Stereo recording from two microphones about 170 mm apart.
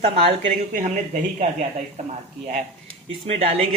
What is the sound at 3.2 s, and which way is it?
Speech, 35° right (ahead or behind).